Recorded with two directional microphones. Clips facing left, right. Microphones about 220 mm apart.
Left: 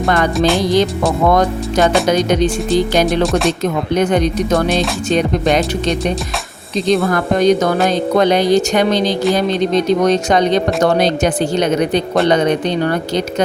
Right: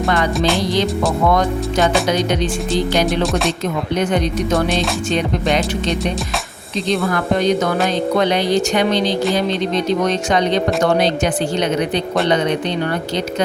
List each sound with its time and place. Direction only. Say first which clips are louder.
0.3 s speech: left 3 dB; centre (ahead or behind)
2.0 s speech: left 4 dB; 45° left (ahead or behind)
3.1 s speech: left 3 dB; centre (ahead or behind)
7.1 s speech: left 4 dB; 40° left (ahead or behind)